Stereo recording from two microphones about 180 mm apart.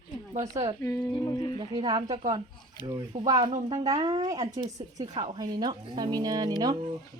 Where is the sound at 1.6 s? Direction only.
25° right (ahead or behind).